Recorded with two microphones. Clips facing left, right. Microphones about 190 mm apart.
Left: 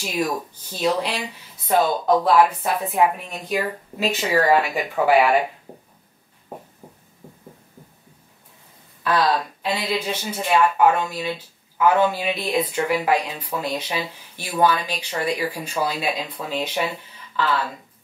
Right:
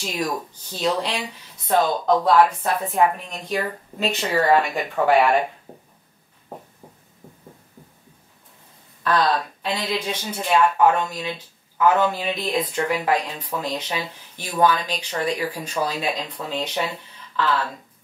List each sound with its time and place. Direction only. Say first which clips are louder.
0.0 s speech: left 2 dB; 10° left (ahead or behind)
6.5 s a sound: left 1 dB; 10° left (ahead or behind)
9.0 s speech: even; 10° left (ahead or behind)